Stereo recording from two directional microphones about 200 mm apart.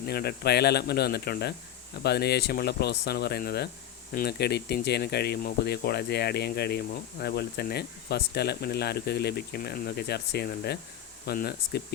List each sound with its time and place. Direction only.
0.1 s speech: 50° left (ahead or behind)